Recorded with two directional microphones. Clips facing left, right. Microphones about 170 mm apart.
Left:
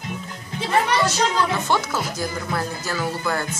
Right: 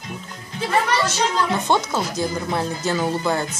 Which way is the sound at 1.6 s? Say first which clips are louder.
Right 2 dB; 20° right (ahead or behind).